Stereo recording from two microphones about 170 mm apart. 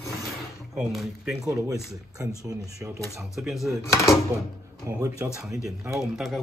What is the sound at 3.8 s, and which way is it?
Speech, 15° left (ahead or behind).